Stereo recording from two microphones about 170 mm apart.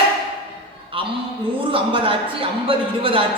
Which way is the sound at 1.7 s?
30° right (ahead or behind).